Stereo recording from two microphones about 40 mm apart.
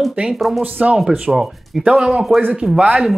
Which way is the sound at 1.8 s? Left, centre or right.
Right.